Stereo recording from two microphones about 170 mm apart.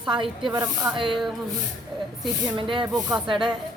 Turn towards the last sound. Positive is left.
turn(degrees=-25)  # may be behind; listen again after turning